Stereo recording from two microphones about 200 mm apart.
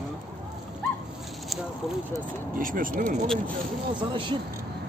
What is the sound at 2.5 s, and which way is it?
Speech, 45° right (ahead or behind).